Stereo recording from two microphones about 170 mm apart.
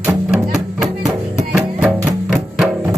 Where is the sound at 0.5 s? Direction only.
Centre (ahead or behind).